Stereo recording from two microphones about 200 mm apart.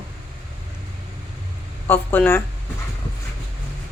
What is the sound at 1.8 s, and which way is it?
Speech, 10° left (ahead or behind).